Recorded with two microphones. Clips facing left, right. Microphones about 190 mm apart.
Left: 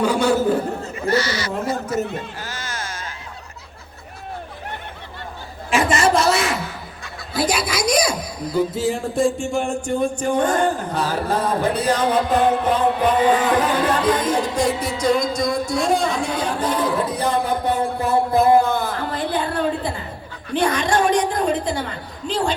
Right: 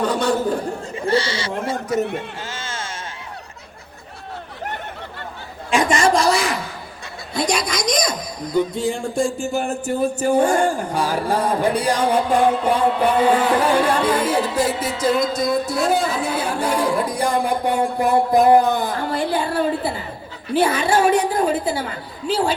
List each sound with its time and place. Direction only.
0.0 s a man's voice: 10° left (ahead or behind)
0.9 s speech: 30° right (ahead or behind)
2.4 s a sound: 25° right (ahead or behind)
5.7 s a woman's voice: 5° left (ahead or behind)